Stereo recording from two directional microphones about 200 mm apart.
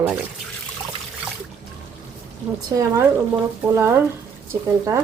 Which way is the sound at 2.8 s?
15° right (ahead or behind).